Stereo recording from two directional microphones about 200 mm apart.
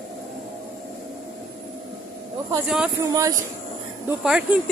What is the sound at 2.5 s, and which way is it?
Speech, 5° right (ahead or behind).